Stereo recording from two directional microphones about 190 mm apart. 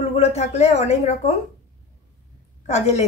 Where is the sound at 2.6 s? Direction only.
35° left (ahead or behind).